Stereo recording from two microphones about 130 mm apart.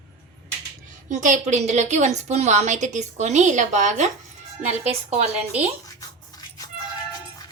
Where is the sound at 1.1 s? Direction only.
75° right (ahead or behind); by 5.6 s 55° right (ahead or behind).